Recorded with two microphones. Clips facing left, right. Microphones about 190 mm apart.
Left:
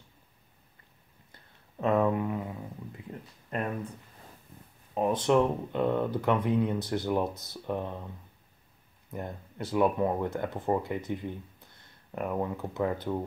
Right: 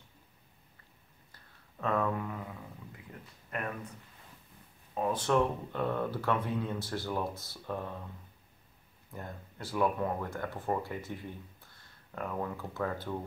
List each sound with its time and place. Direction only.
1.3 s a sound: 20° left (ahead or behind)
3.1 s speech: 30° left (ahead or behind)
4.9 s speech: 20° left (ahead or behind)
9.1 s speech: 20° left (ahead or behind)